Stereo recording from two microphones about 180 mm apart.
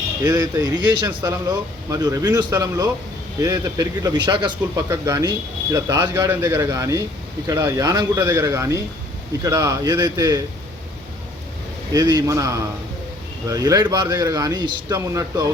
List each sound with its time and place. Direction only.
0.3 s speech: 20° right (ahead or behind)
11.9 s speech: 20° right (ahead or behind)